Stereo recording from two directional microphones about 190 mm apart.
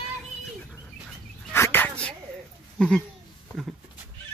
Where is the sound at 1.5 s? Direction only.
10° left (ahead or behind).